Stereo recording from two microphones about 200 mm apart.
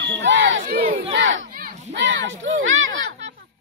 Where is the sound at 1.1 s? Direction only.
65° right (ahead or behind).